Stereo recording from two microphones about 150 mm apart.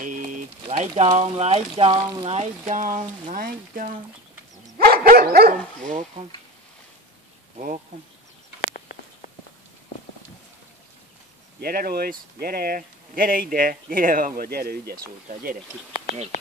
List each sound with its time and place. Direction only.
0.0 s a sound: 60° right (ahead or behind)
0.7 s a sound: 45° right (ahead or behind)
1.1 s speech: 45° right (ahead or behind)
1.9 s speech: 25° right (ahead or behind)
2.2 s speech: 45° right (ahead or behind); by 4.0 s 70° right (ahead or behind)
4.7 s dog: 80° right
5.9 s speech: 55° right (ahead or behind)
7.5 s speech: 50° right (ahead or behind)
11.6 s speech: 85° right